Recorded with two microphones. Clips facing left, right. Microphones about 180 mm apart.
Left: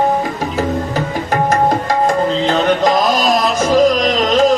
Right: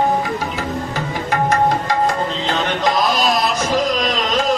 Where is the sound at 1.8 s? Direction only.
45° left (ahead or behind).